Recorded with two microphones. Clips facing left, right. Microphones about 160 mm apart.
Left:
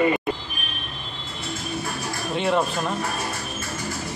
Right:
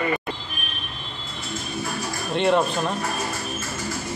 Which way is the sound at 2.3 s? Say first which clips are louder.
Right 3 dB; centre (ahead or behind).